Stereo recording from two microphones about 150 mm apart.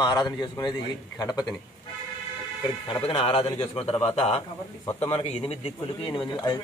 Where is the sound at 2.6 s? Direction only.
30° left (ahead or behind).